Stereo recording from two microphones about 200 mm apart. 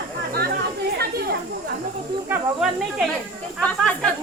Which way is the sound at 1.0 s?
50° right (ahead or behind).